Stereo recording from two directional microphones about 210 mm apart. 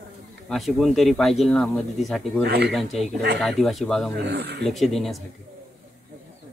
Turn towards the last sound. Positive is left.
turn(degrees=0)  # may be behind; listen again after turning